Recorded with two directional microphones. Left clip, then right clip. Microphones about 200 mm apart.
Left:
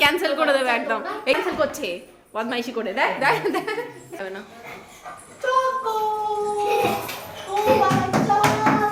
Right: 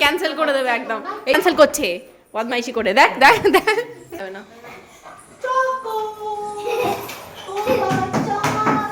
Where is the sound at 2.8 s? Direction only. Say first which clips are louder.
Right 10 dB; 55° right (ahead or behind).